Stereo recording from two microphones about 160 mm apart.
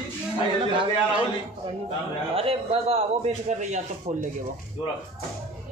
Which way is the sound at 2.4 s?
35° right (ahead or behind).